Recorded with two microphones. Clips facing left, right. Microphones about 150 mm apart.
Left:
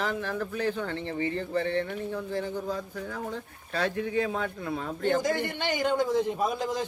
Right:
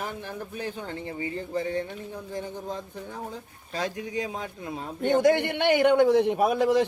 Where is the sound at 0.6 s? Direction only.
15° right (ahead or behind).